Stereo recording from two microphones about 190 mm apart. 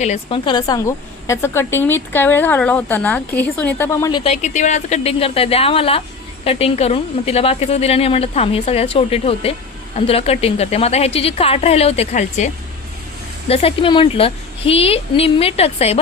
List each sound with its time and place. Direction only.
0.0 s a woman's voice: 30° left (ahead or behind); by 4.2 s 15° left (ahead or behind)
4.2 s a woman's voice: 35° left (ahead or behind)
13.5 s a woman's voice: 30° left (ahead or behind)